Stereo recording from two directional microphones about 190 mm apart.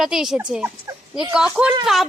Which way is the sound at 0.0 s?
Centre (ahead or behind).